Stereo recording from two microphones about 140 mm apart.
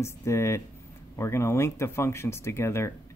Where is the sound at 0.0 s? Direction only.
20° left (ahead or behind).